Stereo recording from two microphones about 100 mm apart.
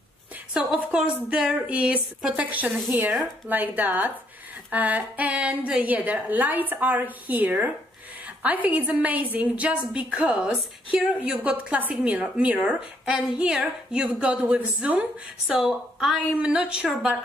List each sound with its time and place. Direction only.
0.6 s a woman's voice: 10° right (ahead or behind)